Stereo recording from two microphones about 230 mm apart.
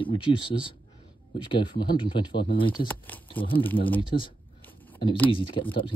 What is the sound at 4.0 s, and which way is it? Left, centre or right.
Speech, left.